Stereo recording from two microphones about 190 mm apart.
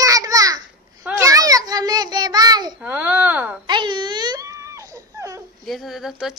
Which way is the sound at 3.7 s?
25° right (ahead or behind).